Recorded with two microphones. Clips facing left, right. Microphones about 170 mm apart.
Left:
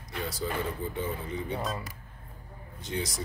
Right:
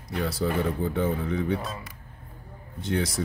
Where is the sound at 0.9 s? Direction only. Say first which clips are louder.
Right 7 dB; 90° right.